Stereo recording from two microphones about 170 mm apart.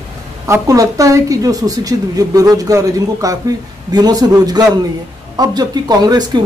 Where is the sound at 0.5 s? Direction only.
20° right (ahead or behind).